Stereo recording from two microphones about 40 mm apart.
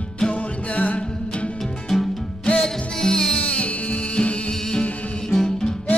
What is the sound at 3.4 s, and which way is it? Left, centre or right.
Music, left.